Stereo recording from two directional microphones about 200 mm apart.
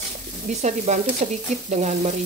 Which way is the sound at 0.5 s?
35° right (ahead or behind).